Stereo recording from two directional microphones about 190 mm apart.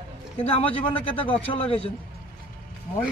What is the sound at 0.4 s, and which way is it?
Speech, 30° left (ahead or behind).